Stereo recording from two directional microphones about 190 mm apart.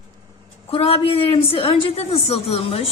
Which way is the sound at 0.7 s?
30° left (ahead or behind).